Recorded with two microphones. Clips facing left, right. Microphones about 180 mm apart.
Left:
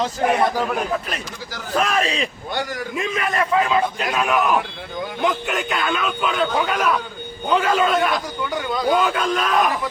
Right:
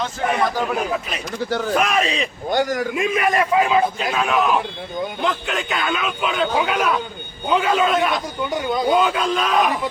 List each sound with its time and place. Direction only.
0.7 s a man's voice: centre (ahead or behind)
1.5 s speech: 60° right (ahead or behind)
1.7 s a man's voice: 5° right (ahead or behind)
2.5 s a man's voice: 45° right (ahead or behind)
3.0 s a man's voice: 15° right (ahead or behind)
4.0 s a man's voice: centre (ahead or behind)
8.4 s speech: 25° right (ahead or behind)
8.9 s a man's voice: centre (ahead or behind)